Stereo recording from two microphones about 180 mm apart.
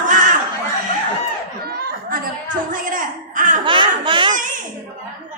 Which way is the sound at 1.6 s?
55° right (ahead or behind).